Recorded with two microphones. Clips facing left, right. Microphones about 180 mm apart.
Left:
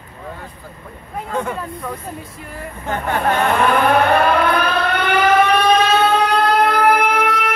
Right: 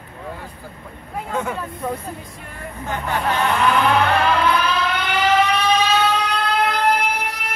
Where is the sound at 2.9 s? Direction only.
50° left (ahead or behind).